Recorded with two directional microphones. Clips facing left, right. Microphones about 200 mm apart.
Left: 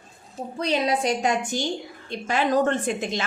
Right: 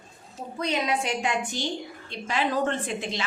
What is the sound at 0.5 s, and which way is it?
A woman's voice, 35° left (ahead or behind).